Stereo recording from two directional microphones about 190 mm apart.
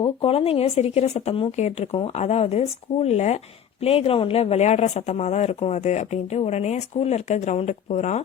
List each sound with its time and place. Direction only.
0.0 s speech: 30° left (ahead or behind)